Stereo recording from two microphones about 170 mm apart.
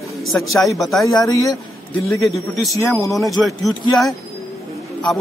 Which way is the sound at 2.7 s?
15° left (ahead or behind).